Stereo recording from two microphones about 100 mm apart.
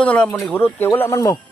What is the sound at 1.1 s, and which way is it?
Speech, 40° left (ahead or behind).